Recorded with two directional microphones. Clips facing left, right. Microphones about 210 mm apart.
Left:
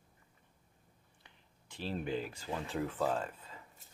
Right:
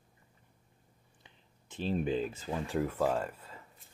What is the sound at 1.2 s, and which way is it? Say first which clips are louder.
Speech: right 4 dB; 20° right (ahead or behind).